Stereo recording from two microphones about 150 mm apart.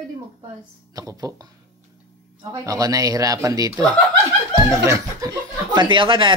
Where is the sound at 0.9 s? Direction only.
25° right (ahead or behind).